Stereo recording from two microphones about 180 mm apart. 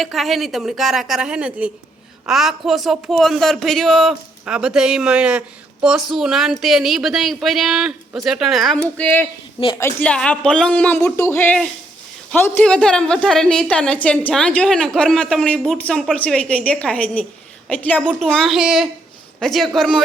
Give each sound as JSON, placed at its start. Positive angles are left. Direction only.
{"t": 0.0, "sound": "a woman's voice", "side_deg": 0}